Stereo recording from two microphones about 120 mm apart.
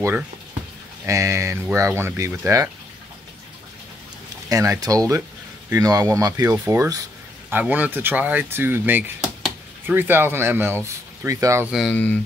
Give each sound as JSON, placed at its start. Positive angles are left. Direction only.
{"t": 1.0, "sound": "speech", "side_deg": -25}
{"t": 4.5, "sound": "speech", "side_deg": -30}
{"t": 7.4, "sound": "speech", "side_deg": -15}
{"t": 11.9, "sound": "speech", "side_deg": 15}